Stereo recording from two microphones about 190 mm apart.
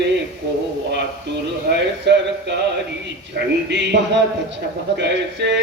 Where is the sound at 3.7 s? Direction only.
65° right (ahead or behind).